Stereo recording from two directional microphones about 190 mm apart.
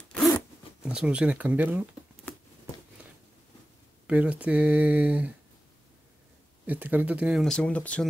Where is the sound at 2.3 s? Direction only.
10° left (ahead or behind).